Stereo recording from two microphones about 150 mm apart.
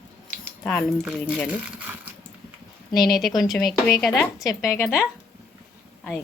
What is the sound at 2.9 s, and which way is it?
Speech, 25° left (ahead or behind).